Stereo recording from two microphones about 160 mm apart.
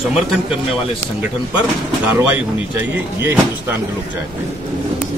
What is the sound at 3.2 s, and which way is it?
Speech, 15° right (ahead or behind).